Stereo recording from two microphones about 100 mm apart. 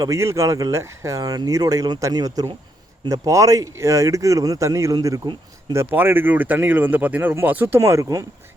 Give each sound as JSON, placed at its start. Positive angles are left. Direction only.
{"t": 0.0, "sound": "speech", "side_deg": -30}
{"t": 5.7, "sound": "speech", "side_deg": -25}
{"t": 7.8, "sound": "speech", "side_deg": -30}